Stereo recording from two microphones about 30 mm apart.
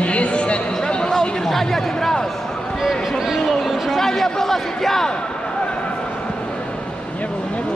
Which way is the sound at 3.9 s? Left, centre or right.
Centre.